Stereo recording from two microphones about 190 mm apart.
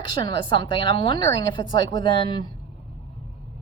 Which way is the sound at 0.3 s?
25° left (ahead or behind).